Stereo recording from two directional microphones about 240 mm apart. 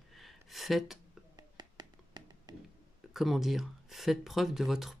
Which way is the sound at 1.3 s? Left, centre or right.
Centre.